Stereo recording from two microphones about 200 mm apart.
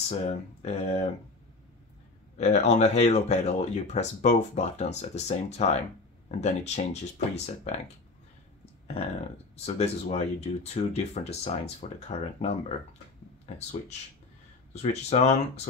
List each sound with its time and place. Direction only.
0.1 s speech: 30° left (ahead or behind)
2.3 s speech: 35° left (ahead or behind)
9.8 s speech: 30° left (ahead or behind)